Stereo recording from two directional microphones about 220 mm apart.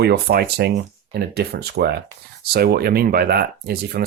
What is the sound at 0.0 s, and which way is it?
Speech, 45° right (ahead or behind).